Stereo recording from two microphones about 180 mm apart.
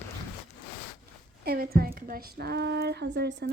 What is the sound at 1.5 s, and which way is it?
Speech, 55° right (ahead or behind).